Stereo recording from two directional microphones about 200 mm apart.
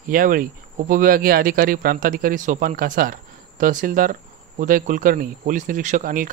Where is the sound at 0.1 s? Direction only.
45° right (ahead or behind).